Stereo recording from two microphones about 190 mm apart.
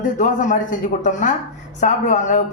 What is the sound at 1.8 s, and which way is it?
Speech, 40° left (ahead or behind).